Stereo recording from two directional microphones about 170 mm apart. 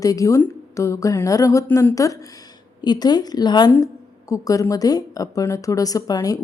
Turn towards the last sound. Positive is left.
turn(degrees=20)  # may be behind; listen again after turning